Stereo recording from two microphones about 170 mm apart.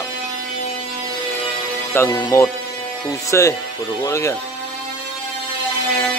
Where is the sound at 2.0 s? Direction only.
20° left (ahead or behind).